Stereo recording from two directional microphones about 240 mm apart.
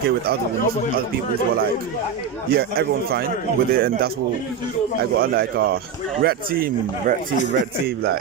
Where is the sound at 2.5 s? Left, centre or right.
Right.